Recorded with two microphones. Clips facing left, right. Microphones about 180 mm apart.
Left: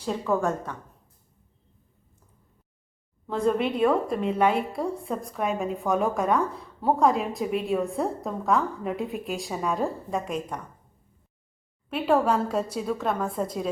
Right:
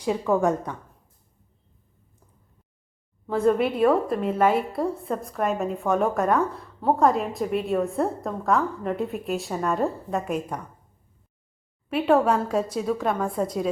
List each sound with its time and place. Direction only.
0.0 s a woman's voice: 15° right (ahead or behind)
3.2 s a woman's voice: 5° right (ahead or behind)
11.9 s a woman's voice: 5° right (ahead or behind)